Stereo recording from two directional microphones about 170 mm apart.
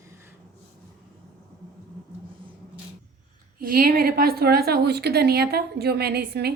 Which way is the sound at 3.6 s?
60° right (ahead or behind).